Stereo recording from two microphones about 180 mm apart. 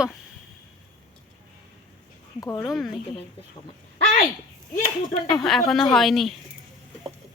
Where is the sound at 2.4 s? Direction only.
20° left (ahead or behind).